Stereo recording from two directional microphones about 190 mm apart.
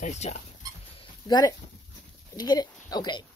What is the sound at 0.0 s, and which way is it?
Speech, 35° left (ahead or behind).